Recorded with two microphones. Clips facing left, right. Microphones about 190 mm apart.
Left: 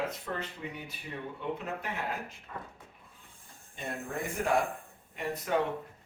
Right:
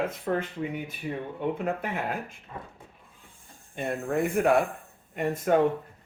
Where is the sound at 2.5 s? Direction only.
20° right (ahead or behind).